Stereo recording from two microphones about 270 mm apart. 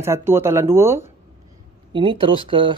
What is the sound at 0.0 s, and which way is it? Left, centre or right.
Speech, centre.